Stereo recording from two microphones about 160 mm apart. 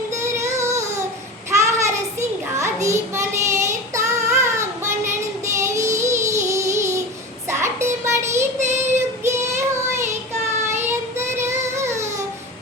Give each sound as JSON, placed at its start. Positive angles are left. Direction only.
{"t": 0.2, "sound": "child singing", "side_deg": -20}
{"t": 8.5, "sound": "child singing", "side_deg": -45}
{"t": 9.2, "sound": "child singing", "side_deg": -15}
{"t": 10.8, "sound": "child singing", "side_deg": -15}